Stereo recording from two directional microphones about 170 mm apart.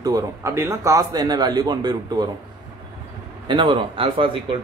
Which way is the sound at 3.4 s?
30° right (ahead or behind).